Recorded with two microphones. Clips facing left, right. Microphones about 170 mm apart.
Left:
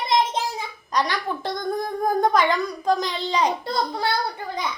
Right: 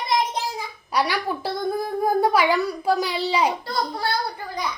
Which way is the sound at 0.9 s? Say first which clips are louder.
Right 1 dB; 10° right (ahead or behind).